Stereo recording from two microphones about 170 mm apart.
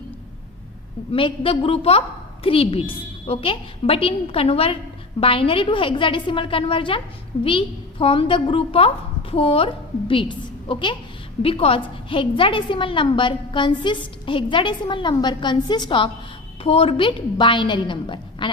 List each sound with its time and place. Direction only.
1.1 s a woman's voice: 30° left (ahead or behind)